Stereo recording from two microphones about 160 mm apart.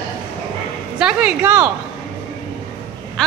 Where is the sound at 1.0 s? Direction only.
5° right (ahead or behind).